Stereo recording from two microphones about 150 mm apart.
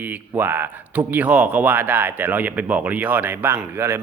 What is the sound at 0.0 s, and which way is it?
Speech, 15° right (ahead or behind).